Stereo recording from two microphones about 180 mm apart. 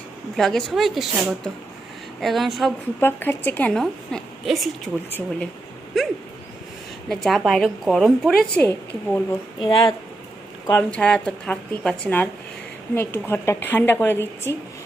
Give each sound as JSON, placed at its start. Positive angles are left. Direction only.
{"t": 0.3, "sound": "a woman's voice", "side_deg": 0}
{"t": 3.0, "sound": "a woman's voice", "side_deg": 10}
{"t": 6.0, "sound": "bird", "side_deg": 0}
{"t": 7.1, "sound": "a woman's voice", "side_deg": 0}
{"t": 9.6, "sound": "speech", "side_deg": 25}
{"t": 10.7, "sound": "a woman's voice", "side_deg": 10}